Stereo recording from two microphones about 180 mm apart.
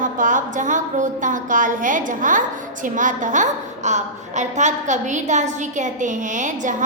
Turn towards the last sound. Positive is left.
turn(degrees=-45)  # may be behind; listen again after turning